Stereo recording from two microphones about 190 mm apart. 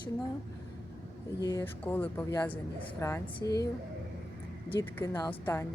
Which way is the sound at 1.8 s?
10° left (ahead or behind).